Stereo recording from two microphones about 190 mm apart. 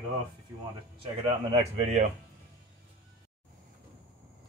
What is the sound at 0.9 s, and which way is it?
Speech, 30° right (ahead or behind).